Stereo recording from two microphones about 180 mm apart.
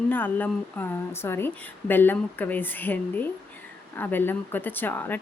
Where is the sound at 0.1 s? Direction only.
10° left (ahead or behind).